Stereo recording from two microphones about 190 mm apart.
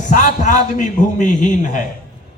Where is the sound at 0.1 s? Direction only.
40° left (ahead or behind).